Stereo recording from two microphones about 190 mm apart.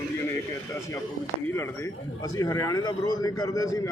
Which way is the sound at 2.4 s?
20° left (ahead or behind).